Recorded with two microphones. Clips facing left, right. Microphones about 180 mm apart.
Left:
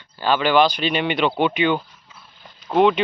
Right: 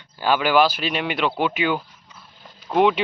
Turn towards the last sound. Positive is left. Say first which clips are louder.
# left 2 dB
turn(degrees=-10)  # may be behind; listen again after turning